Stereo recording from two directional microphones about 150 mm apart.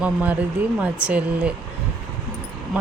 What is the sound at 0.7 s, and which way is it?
Speech, 10° right (ahead or behind).